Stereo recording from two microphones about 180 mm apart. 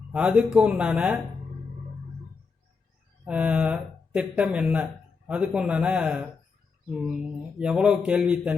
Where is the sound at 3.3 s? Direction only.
5° right (ahead or behind).